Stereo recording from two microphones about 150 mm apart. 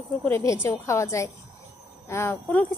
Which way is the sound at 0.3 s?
15° left (ahead or behind).